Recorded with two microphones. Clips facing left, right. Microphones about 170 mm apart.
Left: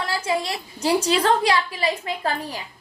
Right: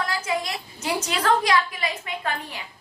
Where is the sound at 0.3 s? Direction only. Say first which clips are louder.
Left 3 dB; 30° left (ahead or behind).